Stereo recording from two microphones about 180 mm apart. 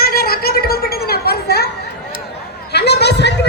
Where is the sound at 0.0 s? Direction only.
55° left (ahead or behind).